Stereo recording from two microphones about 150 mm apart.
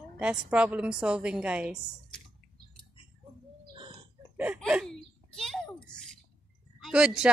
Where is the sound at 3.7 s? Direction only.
35° right (ahead or behind).